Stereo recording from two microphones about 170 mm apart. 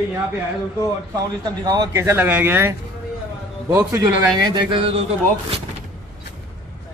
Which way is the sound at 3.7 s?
20° right (ahead or behind).